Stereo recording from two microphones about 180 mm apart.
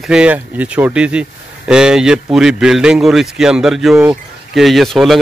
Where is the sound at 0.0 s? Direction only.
5° right (ahead or behind).